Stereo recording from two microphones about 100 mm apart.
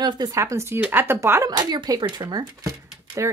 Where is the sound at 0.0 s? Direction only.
35° right (ahead or behind).